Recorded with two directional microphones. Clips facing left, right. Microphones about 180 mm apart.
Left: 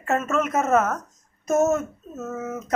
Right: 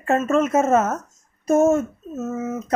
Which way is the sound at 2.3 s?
25° right (ahead or behind).